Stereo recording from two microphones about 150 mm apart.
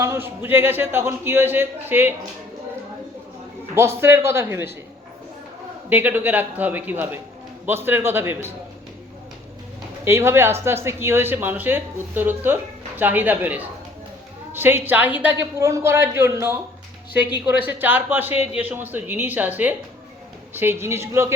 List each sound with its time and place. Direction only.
0.0 s speech: 15° right (ahead or behind)
3.8 s speech: 15° right (ahead or behind)
5.9 s speech: 15° right (ahead or behind)
10.0 s speech: 15° right (ahead or behind)